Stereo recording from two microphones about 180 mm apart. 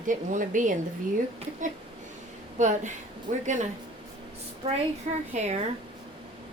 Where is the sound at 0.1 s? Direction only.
45° right (ahead or behind).